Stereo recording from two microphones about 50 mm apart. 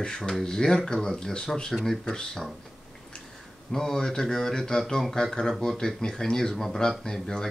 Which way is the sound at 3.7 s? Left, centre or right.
Centre.